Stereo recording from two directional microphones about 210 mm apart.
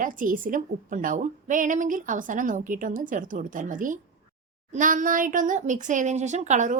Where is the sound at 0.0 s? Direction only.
40° right (ahead or behind).